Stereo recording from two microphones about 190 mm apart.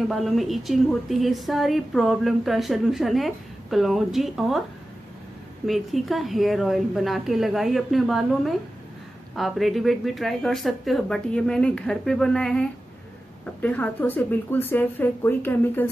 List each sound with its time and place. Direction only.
0.1 s speech: centre (ahead or behind)
5.7 s a woman's voice: centre (ahead or behind)